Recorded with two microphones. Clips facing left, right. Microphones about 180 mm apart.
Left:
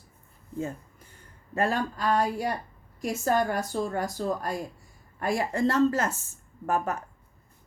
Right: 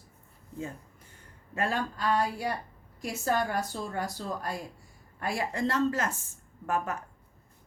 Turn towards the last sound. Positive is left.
turn(degrees=40)  # may be behind; listen again after turning